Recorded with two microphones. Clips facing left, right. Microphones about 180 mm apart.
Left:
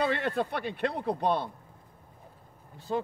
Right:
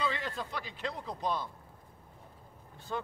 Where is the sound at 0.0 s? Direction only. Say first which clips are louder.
Left 7 dB; 60° left (ahead or behind).